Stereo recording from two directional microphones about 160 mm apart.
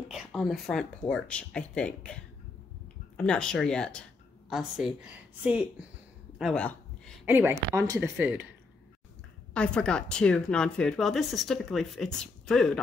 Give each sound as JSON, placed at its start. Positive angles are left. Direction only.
{"t": 0.1, "sound": "a woman's voice", "side_deg": 0}
{"t": 6.3, "sound": "a sound", "side_deg": 5}
{"t": 7.2, "sound": "speech", "side_deg": -15}
{"t": 9.5, "sound": "a woman's voice", "side_deg": 5}